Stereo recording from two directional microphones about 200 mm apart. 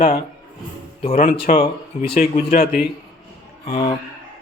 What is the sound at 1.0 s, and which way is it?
Speech, 35° left (ahead or behind).